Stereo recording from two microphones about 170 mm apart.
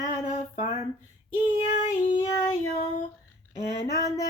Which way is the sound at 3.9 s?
20° left (ahead or behind).